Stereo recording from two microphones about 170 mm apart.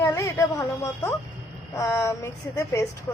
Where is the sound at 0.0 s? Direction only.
15° left (ahead or behind).